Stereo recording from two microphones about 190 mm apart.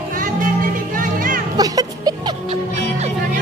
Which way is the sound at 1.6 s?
20° right (ahead or behind).